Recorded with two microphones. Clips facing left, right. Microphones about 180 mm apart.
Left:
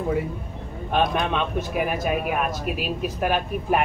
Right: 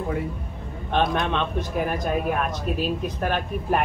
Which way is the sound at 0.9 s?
10° left (ahead or behind).